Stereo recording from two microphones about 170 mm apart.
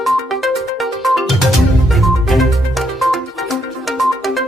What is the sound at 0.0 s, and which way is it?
Music, centre (ahead or behind).